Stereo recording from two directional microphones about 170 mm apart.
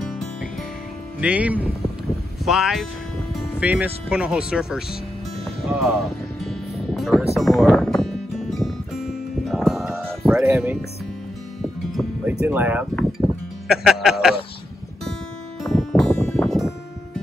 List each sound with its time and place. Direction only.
0.0 s music: centre (ahead or behind)
1.2 s speech: 10° right (ahead or behind)
5.6 s music: centre (ahead or behind)
10.3 s speech: 15° right (ahead or behind)
11.6 s music: centre (ahead or behind)
12.3 s speech: 10° right (ahead or behind)
13.7 s music: centre (ahead or behind)
15.6 s music: centre (ahead or behind)